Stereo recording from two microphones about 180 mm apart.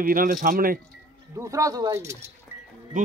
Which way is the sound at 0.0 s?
50° right (ahead or behind).